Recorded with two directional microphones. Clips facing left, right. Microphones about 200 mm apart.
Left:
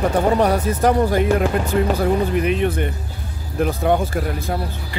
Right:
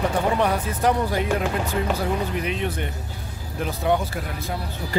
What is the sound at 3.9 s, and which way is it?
Speech, 50° left (ahead or behind).